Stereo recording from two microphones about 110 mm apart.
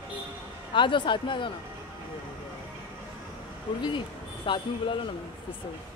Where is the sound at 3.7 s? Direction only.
50° left (ahead or behind).